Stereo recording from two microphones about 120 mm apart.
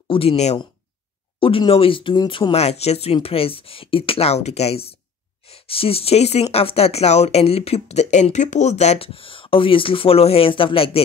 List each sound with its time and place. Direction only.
0.1 s speech: 50° left (ahead or behind)
1.7 s speech: 50° left (ahead or behind)
2.5 s speech: 65° left (ahead or behind)